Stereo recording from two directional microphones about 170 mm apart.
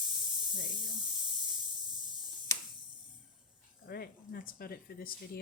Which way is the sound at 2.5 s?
20° left (ahead or behind).